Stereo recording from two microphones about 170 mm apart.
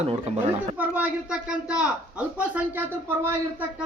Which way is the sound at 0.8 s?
5° right (ahead or behind).